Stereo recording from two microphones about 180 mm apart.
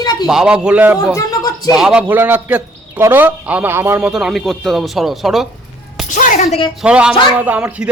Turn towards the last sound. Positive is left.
turn(degrees=-10)  # may be behind; listen again after turning